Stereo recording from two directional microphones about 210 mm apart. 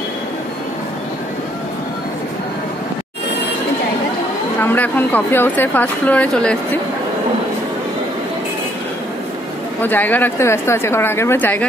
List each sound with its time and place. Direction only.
4.6 s a woman's voice: 10° left (ahead or behind)
9.8 s a woman's voice: 10° left (ahead or behind)